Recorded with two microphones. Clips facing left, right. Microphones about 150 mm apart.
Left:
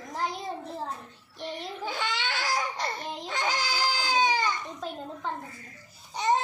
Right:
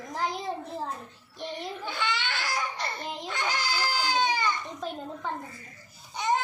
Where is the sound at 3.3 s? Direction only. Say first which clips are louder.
Left 1 dB; 40° left (ahead or behind).